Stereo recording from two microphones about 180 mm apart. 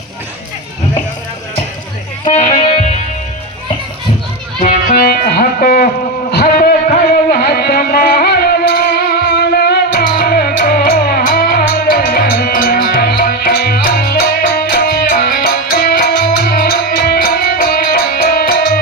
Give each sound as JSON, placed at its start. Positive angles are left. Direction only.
{"t": 2.5, "sound": "music", "side_deg": 30}
{"t": 4.9, "sound": "music", "side_deg": 60}
{"t": 6.3, "sound": "a sound", "side_deg": 60}
{"t": 7.3, "sound": "music", "side_deg": 60}